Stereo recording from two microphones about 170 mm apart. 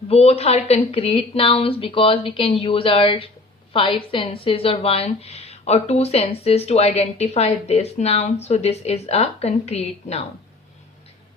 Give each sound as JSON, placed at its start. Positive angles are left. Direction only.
{"t": 0.1, "sound": "speech", "side_deg": 35}